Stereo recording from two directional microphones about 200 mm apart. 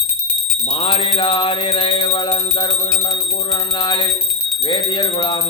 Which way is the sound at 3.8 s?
20° left (ahead or behind).